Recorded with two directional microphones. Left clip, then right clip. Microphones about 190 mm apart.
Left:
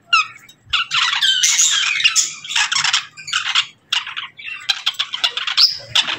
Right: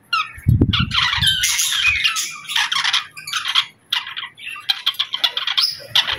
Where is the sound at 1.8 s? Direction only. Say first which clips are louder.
Left 1 dB; 10° left (ahead or behind).